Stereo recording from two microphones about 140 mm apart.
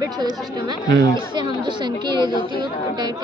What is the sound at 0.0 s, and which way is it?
Speech, 30° right (ahead or behind).